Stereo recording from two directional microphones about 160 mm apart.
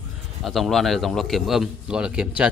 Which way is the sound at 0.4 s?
Centre (ahead or behind).